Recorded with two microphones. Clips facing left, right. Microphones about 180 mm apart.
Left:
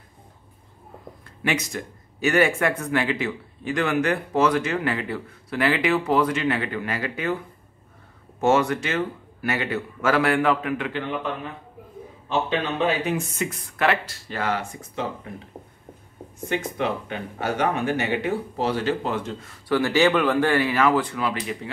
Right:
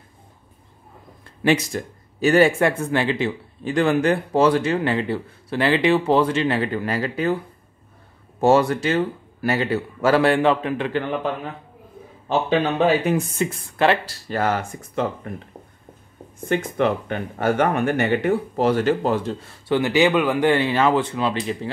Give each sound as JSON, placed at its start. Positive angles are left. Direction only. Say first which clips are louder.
{"t": 1.4, "sound": "speech", "louder": "right 7 dB", "side_deg": -35}
{"t": 8.4, "sound": "speech", "louder": "right 3 dB", "side_deg": -35}
{"t": 12.3, "sound": "speech", "louder": "right 5 dB", "side_deg": -45}
{"t": 13.4, "sound": "speech", "louder": "right 4 dB", "side_deg": -30}
{"t": 15.5, "sound": "speech", "louder": "left 1 dB", "side_deg": 10}
{"t": 16.4, "sound": "speech", "louder": "right 5 dB", "side_deg": -50}
{"t": 19.7, "sound": "speech", "louder": "right 2 dB", "side_deg": -20}